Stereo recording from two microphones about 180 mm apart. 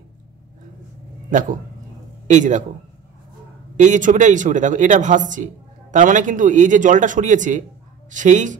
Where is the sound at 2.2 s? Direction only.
45° right (ahead or behind).